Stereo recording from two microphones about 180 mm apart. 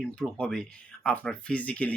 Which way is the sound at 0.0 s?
5° left (ahead or behind).